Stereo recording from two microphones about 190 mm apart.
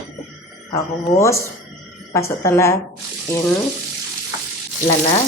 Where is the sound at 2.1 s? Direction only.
15° left (ahead or behind).